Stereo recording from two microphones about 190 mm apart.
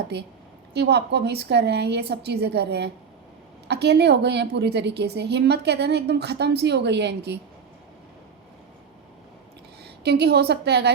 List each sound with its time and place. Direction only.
0.1 s a woman's voice: 60° right (ahead or behind)
9.8 s a woman's voice: 60° right (ahead or behind)